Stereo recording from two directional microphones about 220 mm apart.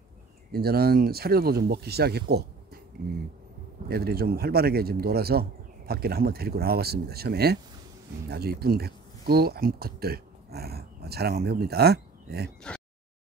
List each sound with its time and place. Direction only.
0.5 s speech: 45° right (ahead or behind)
3.9 s speech: 45° right (ahead or behind)
12.7 s a sound: 5° left (ahead or behind)